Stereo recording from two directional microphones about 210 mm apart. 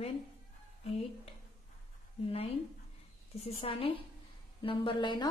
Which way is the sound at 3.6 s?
25° left (ahead or behind).